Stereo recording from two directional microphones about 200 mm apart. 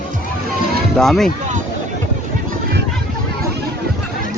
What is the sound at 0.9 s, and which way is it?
Speech, centre (ahead or behind).